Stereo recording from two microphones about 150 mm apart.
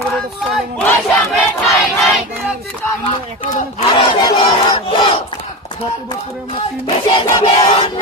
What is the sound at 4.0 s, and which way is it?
Battle cry, 40° left (ahead or behind).